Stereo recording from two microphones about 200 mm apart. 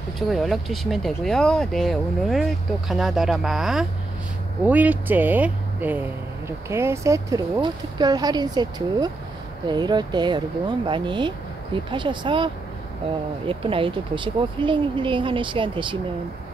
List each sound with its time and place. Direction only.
0.3 s speech: centre (ahead or behind); by 12.4 s 25° right (ahead or behind)
13.5 s speech: 25° right (ahead or behind)